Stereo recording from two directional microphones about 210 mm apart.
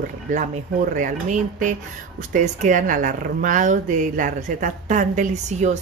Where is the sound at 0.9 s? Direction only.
40° right (ahead or behind).